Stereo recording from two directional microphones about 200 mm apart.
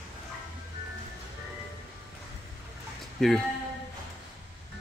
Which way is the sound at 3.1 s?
Centre (ahead or behind).